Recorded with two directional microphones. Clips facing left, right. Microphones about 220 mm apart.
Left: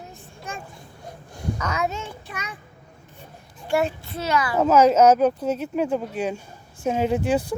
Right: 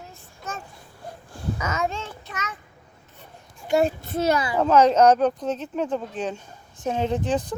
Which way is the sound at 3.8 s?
40° right (ahead or behind).